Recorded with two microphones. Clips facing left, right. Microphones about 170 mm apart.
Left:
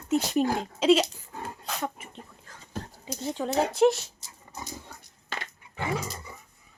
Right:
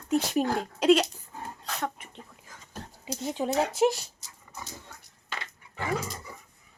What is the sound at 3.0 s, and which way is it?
Speech, 15° right (ahead or behind).